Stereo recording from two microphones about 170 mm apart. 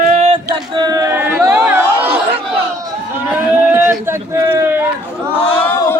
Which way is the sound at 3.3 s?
10° right (ahead or behind).